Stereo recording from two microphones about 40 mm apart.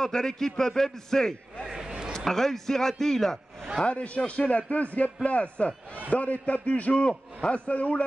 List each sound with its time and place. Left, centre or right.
0.0 s a man's voice: centre
1.7 s a sound: centre
2.1 s a man's voice: centre
3.8 s a man's voice: left